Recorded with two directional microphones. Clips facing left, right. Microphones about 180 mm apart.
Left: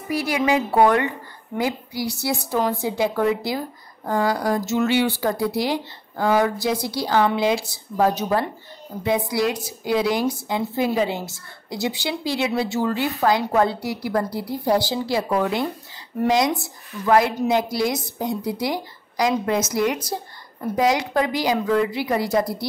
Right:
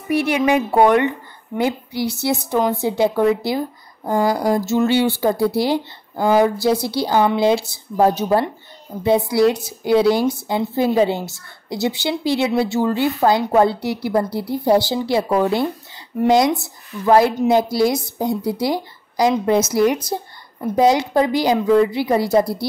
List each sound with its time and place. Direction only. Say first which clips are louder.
0.1 s speech: right 4 dB; 25° right (ahead or behind)
17.0 s a woman's voice: right 4 dB; 30° right (ahead or behind)